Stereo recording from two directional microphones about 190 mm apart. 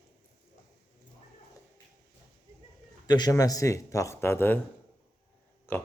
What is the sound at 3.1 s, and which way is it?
Speech, 20° left (ahead or behind).